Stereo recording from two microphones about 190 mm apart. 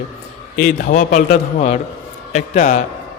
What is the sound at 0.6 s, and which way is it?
A man's voice, 45° left (ahead or behind).